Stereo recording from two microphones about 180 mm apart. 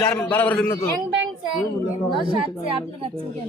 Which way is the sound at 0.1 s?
10° left (ahead or behind).